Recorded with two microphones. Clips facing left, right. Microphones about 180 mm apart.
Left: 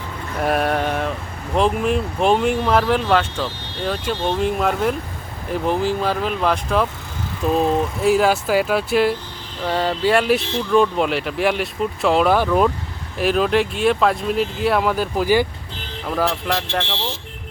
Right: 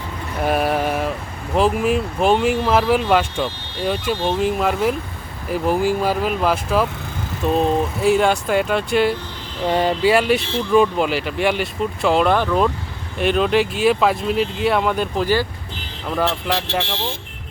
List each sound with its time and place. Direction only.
0.3 s mantra: centre (ahead or behind)
1.5 s speech: 5° right (ahead or behind)
9.6 s speech: 15° right (ahead or behind)
10.1 s speech: centre (ahead or behind)